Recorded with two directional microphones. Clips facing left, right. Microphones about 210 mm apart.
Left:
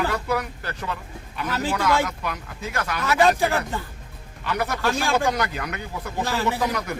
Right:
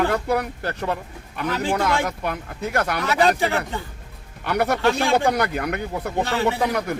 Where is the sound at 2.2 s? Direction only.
45° right (ahead or behind).